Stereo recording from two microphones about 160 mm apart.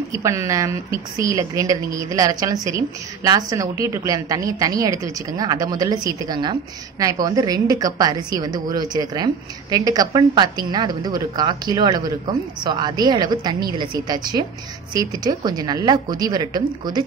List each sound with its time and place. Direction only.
0.1 s a woman's voice: 20° right (ahead or behind)